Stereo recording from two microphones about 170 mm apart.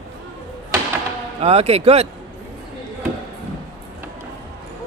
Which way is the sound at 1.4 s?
35° right (ahead or behind).